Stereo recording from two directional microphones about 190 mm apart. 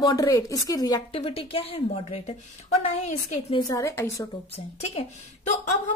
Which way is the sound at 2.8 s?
35° left (ahead or behind).